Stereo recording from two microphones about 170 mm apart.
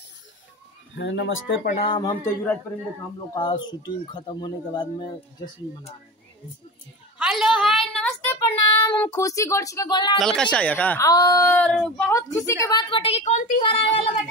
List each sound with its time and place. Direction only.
0.9 s speech: 90° left
1.8 s speech: 25° left (ahead or behind)
2.2 s speech: 10° left (ahead or behind)
3.3 s speech: 30° left (ahead or behind)
7.2 s a woman's voice: 5° right (ahead or behind)
8.3 s speech: 15° left (ahead or behind)
10.1 s speech: 5° left (ahead or behind)
11.1 s speech: 20° left (ahead or behind)